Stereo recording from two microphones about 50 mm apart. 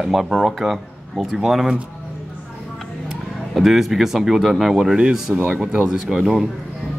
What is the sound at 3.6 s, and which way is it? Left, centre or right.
Speech, centre.